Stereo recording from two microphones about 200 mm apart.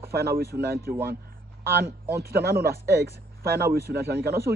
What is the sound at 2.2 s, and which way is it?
A man's voice, 50° right (ahead or behind).